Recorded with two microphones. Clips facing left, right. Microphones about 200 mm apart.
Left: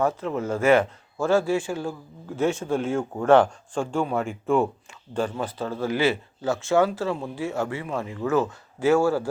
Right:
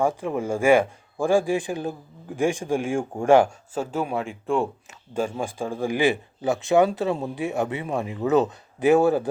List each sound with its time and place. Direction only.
0.0 s speech: 15° right (ahead or behind)
5.1 s speech: 10° right (ahead or behind)